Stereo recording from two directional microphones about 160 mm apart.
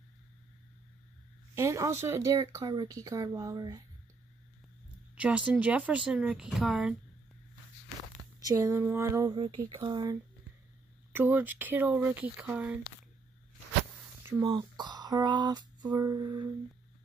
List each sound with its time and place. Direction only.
1.5 s speech: 20° right (ahead or behind)
5.2 s speech: 5° right (ahead or behind)
8.5 s speech: 15° right (ahead or behind)
11.1 s speech: 10° right (ahead or behind)
14.4 s speech: 30° right (ahead or behind)